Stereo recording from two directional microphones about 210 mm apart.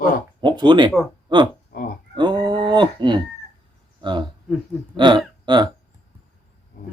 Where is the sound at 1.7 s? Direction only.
40° left (ahead or behind).